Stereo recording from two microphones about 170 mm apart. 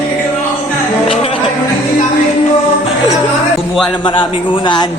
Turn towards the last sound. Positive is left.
turn(degrees=30)  # may be behind; listen again after turning